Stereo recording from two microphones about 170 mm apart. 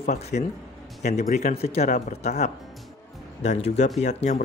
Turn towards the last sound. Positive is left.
turn(degrees=40)  # may be behind; listen again after turning